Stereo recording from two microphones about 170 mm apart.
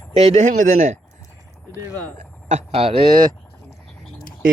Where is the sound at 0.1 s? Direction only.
40° right (ahead or behind).